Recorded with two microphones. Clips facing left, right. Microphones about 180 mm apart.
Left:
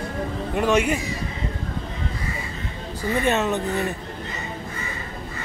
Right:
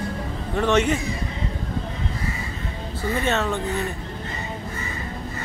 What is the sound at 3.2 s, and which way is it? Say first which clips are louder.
Speech: left 3 dB; 15° left (ahead or behind).